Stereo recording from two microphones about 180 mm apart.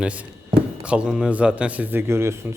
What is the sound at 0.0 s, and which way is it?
A man's voice, 5° right (ahead or behind).